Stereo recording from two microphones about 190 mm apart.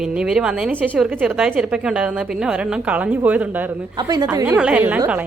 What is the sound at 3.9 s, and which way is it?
Speech, 20° right (ahead or behind).